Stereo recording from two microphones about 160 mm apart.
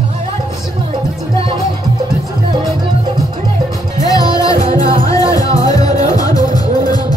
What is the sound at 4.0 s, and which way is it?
Music, 25° left (ahead or behind).